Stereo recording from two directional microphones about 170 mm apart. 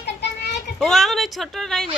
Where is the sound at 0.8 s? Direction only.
Centre (ahead or behind).